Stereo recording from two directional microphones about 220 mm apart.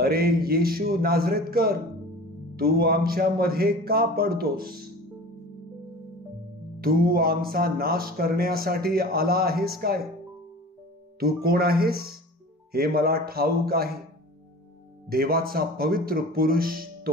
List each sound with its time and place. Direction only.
0.0 s speech: 45° right (ahead or behind)
6.8 s speech: 40° right (ahead or behind)
11.4 s speech: 45° right (ahead or behind)
15.0 s speech: 45° right (ahead or behind)